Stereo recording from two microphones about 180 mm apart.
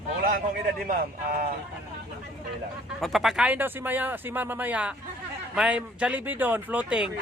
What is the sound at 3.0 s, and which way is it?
Speech, centre (ahead or behind).